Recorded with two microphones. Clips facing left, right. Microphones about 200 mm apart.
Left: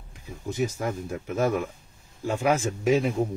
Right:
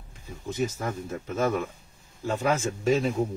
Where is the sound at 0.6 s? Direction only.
15° left (ahead or behind).